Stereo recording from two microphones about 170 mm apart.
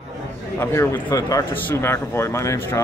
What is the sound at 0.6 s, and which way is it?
Speech, 20° left (ahead or behind).